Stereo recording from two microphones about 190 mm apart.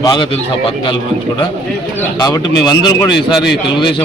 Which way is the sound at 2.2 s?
20° left (ahead or behind).